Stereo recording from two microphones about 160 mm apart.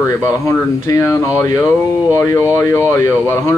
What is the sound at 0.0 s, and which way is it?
Speech, 15° left (ahead or behind).